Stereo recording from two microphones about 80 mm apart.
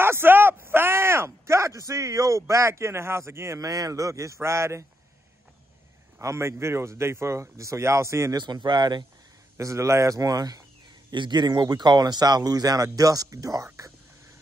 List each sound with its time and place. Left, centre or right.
0.0 s speech: right
6.1 s speech: right
8.4 s speech: right
9.6 s speech: right
11.1 s speech: right